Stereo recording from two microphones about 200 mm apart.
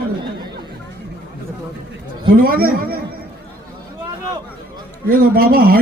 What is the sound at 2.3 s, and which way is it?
Speech, 45° right (ahead or behind).